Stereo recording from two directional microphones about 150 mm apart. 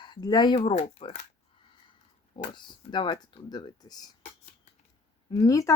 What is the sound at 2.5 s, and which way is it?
Speech, 30° left (ahead or behind).